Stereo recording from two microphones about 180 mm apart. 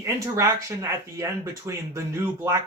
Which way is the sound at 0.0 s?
15° right (ahead or behind).